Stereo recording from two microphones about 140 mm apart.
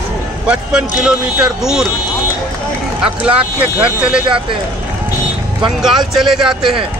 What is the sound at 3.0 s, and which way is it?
A man's voice, 10° right (ahead or behind).